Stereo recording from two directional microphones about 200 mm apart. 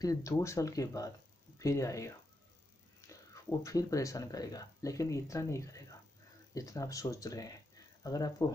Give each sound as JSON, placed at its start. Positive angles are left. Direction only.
{"t": 0.0, "sound": "speech", "side_deg": 15}